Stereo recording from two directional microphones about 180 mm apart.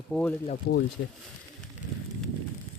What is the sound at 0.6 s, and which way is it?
Speech, 60° left (ahead or behind).